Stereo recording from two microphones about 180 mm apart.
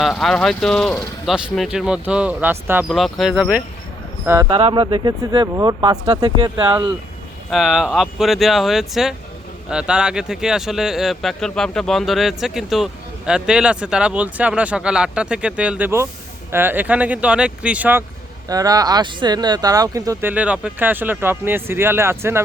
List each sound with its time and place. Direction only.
0.0 s speech: centre (ahead or behind)
2.9 s speech: centre (ahead or behind)
4.4 s speech: 35° right (ahead or behind)
7.5 s speech: centre (ahead or behind)
18.4 s speech: 20° right (ahead or behind)
20.3 s speech: 5° right (ahead or behind)